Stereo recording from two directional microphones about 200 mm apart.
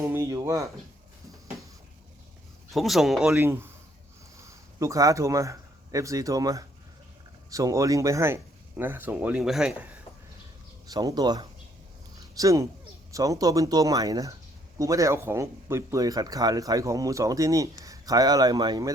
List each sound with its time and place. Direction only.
0.1 s speech: 15° right (ahead or behind)
2.7 s a man's voice: centre (ahead or behind)
10.8 s speech: 20° right (ahead or behind)